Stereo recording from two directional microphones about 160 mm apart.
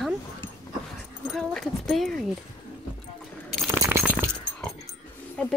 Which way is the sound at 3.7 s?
15° right (ahead or behind).